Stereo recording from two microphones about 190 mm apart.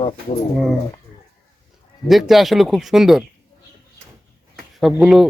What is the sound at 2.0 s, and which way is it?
A man's voice, centre (ahead or behind).